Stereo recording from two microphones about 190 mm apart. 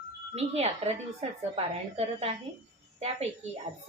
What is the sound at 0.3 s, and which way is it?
Speech, 35° right (ahead or behind).